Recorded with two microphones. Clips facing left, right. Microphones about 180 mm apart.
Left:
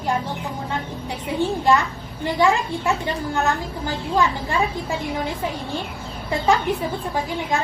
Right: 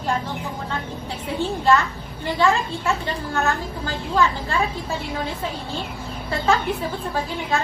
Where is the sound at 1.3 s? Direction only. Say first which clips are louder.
Left 1 dB; 15° left (ahead or behind).